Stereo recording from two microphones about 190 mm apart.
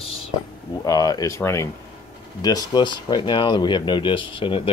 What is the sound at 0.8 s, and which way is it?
Speech, 20° left (ahead or behind).